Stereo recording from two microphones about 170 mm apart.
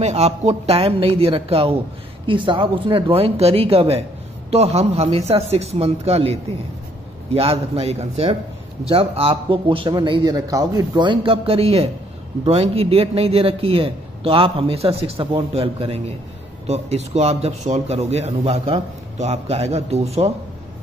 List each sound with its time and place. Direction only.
0.0 s speech: 40° right (ahead or behind)